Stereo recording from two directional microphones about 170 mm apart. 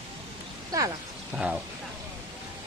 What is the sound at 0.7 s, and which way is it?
Speech, 20° right (ahead or behind).